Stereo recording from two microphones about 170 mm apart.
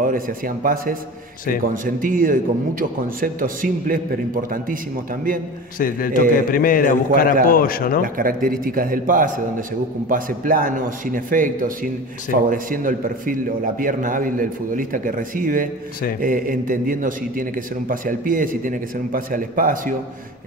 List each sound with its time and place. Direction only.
1.7 s a man's voice: 55° right (ahead or behind)
5.8 s a man's voice: 55° left (ahead or behind)
8.0 s a man's voice: 55° right (ahead or behind)